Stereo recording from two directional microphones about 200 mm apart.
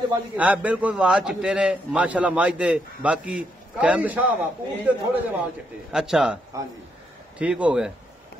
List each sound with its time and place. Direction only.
0.4 s a man's voice: 10° right (ahead or behind)
6.5 s a man's voice: 15° right (ahead or behind)